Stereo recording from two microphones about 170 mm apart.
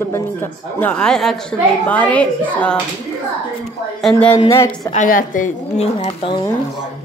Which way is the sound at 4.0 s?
5° left (ahead or behind).